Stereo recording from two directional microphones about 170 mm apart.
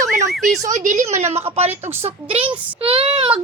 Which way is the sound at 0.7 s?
45° right (ahead or behind).